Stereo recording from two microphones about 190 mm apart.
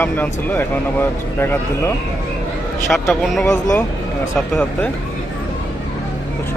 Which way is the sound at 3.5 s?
15° left (ahead or behind).